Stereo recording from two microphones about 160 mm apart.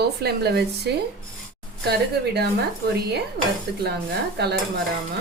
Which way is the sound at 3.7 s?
90° right.